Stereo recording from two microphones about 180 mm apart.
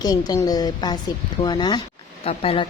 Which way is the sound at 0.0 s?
20° left (ahead or behind).